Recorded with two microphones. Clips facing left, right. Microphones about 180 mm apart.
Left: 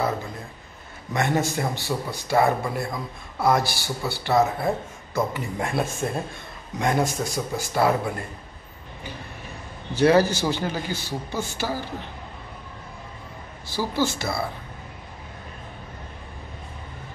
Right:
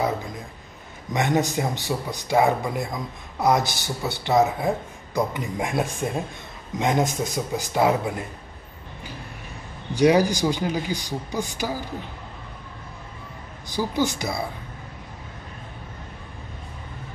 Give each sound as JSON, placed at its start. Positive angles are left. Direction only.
{"t": 1.1, "sound": "a man's voice", "side_deg": -15}
{"t": 9.9, "sound": "a man's voice", "side_deg": -15}
{"t": 13.7, "sound": "a man's voice", "side_deg": -15}